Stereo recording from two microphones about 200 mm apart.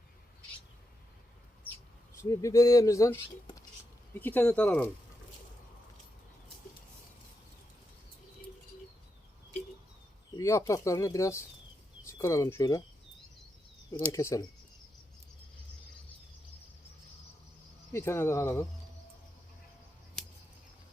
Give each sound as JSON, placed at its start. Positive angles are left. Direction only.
{"t": 2.1, "sound": "speech", "side_deg": 15}
{"t": 10.3, "sound": "speech", "side_deg": 15}
{"t": 14.1, "sound": "speech", "side_deg": 15}
{"t": 17.9, "sound": "speech", "side_deg": 10}
{"t": 20.2, "sound": "a sound", "side_deg": 5}